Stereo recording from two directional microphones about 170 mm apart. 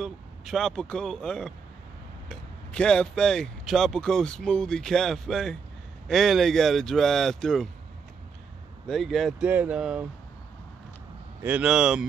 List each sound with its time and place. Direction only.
0.0 s speech: centre (ahead or behind)
8.8 s speech: centre (ahead or behind)
11.4 s speech: 5° right (ahead or behind)